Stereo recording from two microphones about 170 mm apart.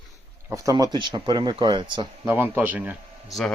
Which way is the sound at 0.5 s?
20° right (ahead or behind).